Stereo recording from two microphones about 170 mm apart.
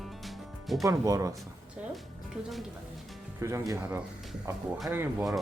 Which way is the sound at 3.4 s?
15° right (ahead or behind).